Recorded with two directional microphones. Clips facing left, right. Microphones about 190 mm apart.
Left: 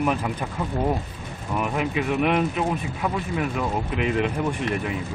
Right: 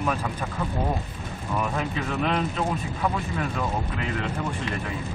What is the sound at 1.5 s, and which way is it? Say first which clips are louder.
Speech: left 3 dB; 15° left (ahead or behind).